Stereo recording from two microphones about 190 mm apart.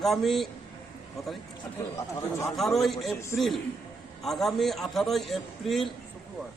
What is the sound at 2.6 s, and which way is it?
A man's voice, centre (ahead or behind).